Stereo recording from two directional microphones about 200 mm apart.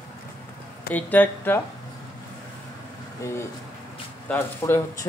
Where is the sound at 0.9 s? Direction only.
10° left (ahead or behind).